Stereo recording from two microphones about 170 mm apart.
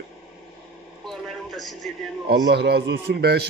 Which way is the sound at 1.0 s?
Centre (ahead or behind).